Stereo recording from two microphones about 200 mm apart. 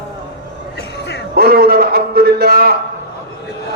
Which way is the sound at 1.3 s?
50° right (ahead or behind).